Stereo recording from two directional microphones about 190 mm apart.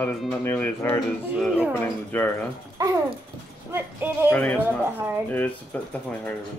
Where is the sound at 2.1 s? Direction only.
10° left (ahead or behind).